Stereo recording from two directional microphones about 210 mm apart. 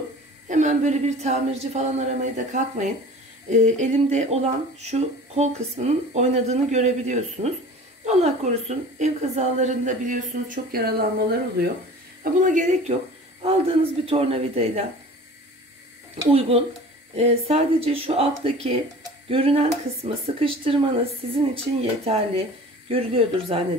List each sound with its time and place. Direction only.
0.5 s a woman's voice: 35° right (ahead or behind)
14.0 s speech: 25° right (ahead or behind)
16.3 s speech: 25° right (ahead or behind)